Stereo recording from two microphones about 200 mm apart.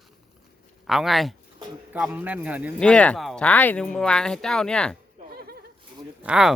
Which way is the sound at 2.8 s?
5° left (ahead or behind).